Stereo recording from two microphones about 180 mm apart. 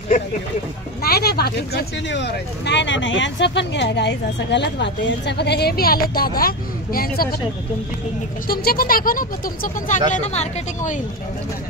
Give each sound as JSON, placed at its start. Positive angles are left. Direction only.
{"t": 1.0, "sound": "speech", "side_deg": 60}
{"t": 8.5, "sound": "speech", "side_deg": 55}